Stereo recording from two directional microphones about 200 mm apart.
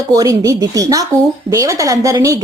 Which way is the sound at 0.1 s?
15° right (ahead or behind).